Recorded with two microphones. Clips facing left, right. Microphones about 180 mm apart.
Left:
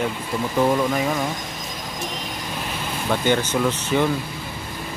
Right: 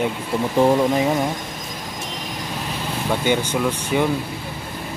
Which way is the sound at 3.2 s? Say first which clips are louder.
Even; 10° right (ahead or behind).